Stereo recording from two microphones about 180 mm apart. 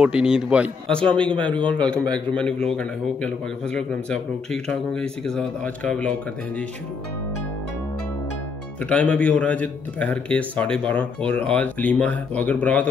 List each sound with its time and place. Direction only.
0.0 s a man's voice: 5° right (ahead or behind)
8.8 s a man's voice: 5° left (ahead or behind)